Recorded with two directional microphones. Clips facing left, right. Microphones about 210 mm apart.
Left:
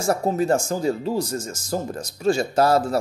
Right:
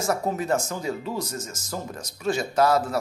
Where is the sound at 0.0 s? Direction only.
30° left (ahead or behind).